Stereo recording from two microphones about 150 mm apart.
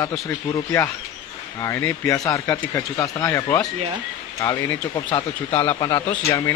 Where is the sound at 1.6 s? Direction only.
15° left (ahead or behind).